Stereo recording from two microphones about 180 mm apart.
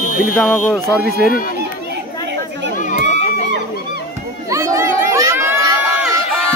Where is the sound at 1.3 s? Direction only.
50° left (ahead or behind).